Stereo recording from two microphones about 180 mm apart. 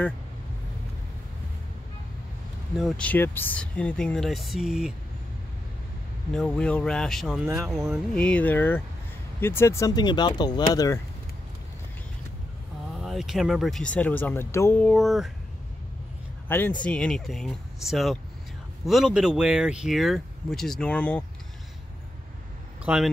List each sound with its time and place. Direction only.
2.8 s speech: 10° left (ahead or behind)
6.3 s speech: 5° left (ahead or behind); by 11.0 s 20° left (ahead or behind)
13.0 s speech: centre (ahead or behind)
16.4 s speech: 10° left (ahead or behind)
22.8 s speech: 5° right (ahead or behind)